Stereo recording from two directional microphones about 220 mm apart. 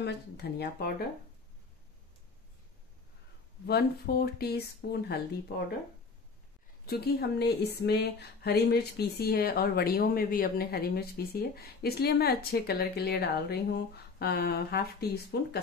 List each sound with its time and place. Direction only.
0.0 s speech: 45° left (ahead or behind)
3.6 s speech: 45° left (ahead or behind)
6.9 s speech: 45° left (ahead or behind)